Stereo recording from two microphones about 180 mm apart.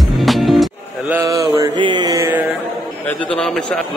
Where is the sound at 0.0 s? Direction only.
Centre (ahead or behind).